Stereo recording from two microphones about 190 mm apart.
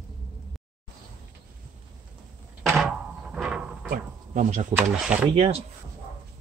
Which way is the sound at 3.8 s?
45° right (ahead or behind).